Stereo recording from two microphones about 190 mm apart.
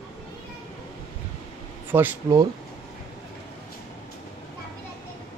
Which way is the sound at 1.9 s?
10° right (ahead or behind).